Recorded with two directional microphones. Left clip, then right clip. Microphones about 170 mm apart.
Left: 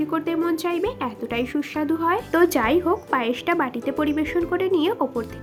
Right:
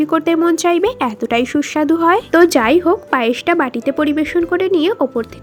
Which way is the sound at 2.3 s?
30° right (ahead or behind).